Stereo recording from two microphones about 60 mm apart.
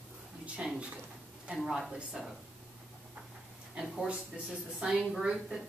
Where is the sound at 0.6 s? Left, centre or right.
Centre.